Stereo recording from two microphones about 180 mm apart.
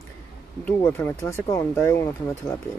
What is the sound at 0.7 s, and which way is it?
Speech, 15° left (ahead or behind).